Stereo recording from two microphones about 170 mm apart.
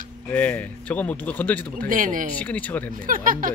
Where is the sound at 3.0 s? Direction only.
55° right (ahead or behind).